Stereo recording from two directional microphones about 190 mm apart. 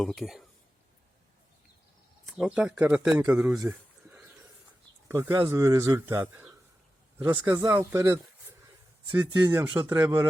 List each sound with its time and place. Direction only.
0.0 s speech: centre (ahead or behind)
2.2 s speech: 5° right (ahead or behind)
3.2 s speech: 15° right (ahead or behind)
3.6 s a sound: 10° right (ahead or behind)
5.0 s speech: 10° right (ahead or behind)
7.3 s speech: 10° right (ahead or behind)